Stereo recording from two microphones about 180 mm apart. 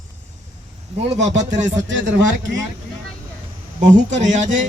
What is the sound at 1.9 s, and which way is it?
Speech, 90° right.